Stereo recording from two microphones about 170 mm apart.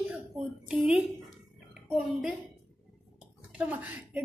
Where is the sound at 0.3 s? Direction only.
Centre (ahead or behind).